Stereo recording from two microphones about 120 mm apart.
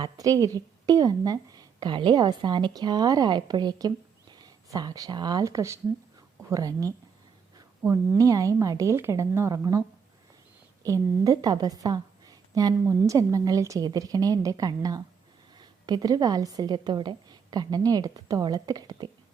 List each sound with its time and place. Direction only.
0.0 s a woman's voice: 30° right (ahead or behind)
7.8 s a woman's voice: 20° right (ahead or behind)
10.8 s a woman's voice: 30° right (ahead or behind)